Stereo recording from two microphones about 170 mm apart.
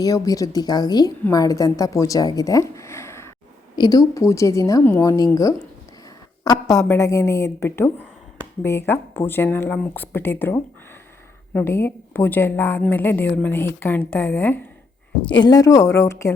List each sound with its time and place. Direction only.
0.0 s a woman's voice: 20° left (ahead or behind)
6.7 s a woman's voice: 15° left (ahead or behind)
15.3 s a woman's voice: 25° left (ahead or behind)